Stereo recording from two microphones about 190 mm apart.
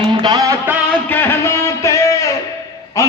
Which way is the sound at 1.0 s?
10° left (ahead or behind).